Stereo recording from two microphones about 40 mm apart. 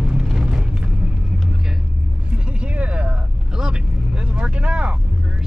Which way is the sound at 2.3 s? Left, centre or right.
Right.